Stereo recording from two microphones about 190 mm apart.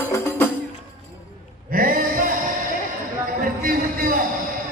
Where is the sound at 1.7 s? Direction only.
50° right (ahead or behind).